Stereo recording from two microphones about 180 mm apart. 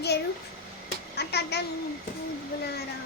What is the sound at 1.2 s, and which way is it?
Speech, 65° left (ahead or behind).